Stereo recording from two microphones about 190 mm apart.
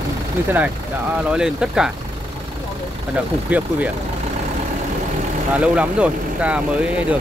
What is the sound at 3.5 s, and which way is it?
Speech, 5° right (ahead or behind).